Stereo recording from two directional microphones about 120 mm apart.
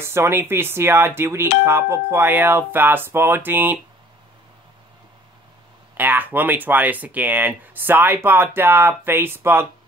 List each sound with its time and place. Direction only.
0.0 s speech: 20° right (ahead or behind)
5.9 s speech: 15° right (ahead or behind)